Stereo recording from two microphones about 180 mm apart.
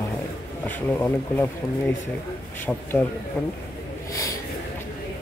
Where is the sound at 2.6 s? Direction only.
10° left (ahead or behind).